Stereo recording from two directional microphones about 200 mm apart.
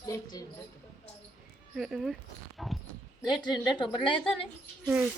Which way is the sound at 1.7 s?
Centre (ahead or behind).